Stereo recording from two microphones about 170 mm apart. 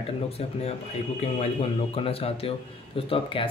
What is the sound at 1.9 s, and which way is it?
Speech, 35° left (ahead or behind).